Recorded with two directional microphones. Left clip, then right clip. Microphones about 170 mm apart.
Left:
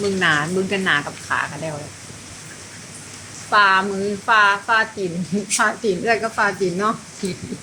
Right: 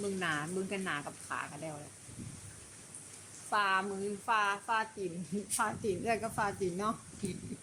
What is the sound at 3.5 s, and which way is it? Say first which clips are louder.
Speech: left 16 dB; 20° right (ahead or behind).